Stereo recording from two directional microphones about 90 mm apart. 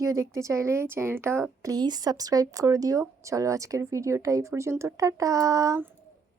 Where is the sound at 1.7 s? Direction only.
50° right (ahead or behind).